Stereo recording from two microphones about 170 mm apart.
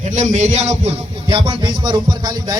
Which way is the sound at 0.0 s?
45° right (ahead or behind).